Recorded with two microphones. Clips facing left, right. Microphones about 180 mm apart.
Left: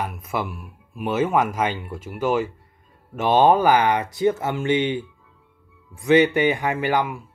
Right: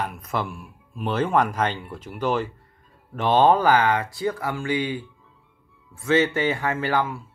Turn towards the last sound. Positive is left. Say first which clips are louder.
# left 2 dB
turn(degrees=15)  # may be behind; listen again after turning